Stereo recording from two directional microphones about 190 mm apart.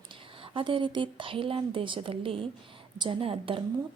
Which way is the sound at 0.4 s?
30° right (ahead or behind).